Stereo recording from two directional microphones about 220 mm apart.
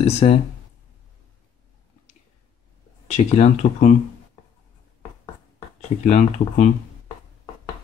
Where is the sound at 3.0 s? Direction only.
30° left (ahead or behind).